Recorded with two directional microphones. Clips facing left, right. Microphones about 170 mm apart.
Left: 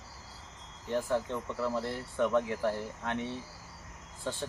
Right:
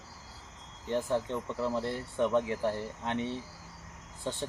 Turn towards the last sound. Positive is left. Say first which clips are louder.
# right 1 dB
turn(degrees=-20)  # may be behind; listen again after turning